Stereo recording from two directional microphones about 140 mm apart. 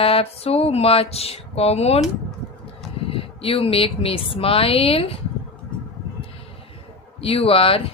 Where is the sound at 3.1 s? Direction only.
40° left (ahead or behind).